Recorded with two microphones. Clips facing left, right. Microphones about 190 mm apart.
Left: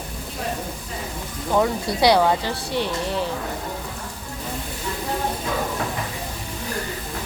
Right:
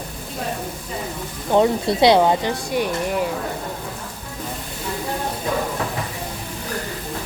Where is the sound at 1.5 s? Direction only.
25° right (ahead or behind).